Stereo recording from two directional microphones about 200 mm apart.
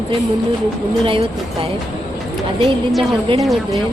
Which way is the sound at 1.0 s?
25° right (ahead or behind).